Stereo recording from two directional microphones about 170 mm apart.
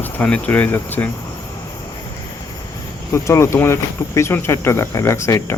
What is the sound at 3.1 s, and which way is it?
Speech, 15° left (ahead or behind).